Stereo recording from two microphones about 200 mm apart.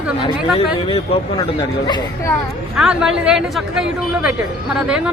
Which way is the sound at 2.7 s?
5° right (ahead or behind).